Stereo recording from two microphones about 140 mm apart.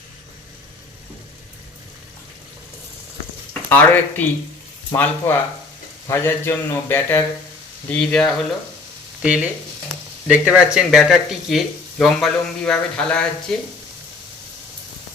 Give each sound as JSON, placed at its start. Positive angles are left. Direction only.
{"t": 3.7, "sound": "speech", "side_deg": 10}
{"t": 9.2, "sound": "frying", "side_deg": -10}
{"t": 10.2, "sound": "speech", "side_deg": -10}